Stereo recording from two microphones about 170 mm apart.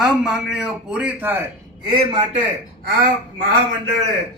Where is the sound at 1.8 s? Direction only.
25° right (ahead or behind).